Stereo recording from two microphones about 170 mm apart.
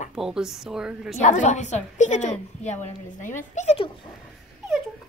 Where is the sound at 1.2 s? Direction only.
45° left (ahead or behind).